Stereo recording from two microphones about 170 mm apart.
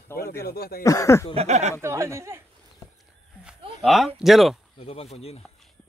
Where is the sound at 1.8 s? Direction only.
15° right (ahead or behind).